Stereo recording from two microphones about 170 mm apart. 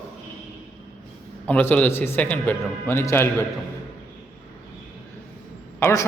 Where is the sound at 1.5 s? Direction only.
10° left (ahead or behind).